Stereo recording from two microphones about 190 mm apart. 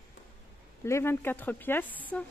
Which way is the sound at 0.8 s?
15° left (ahead or behind).